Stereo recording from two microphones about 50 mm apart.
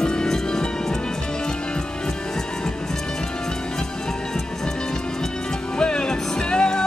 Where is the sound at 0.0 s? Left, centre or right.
Centre.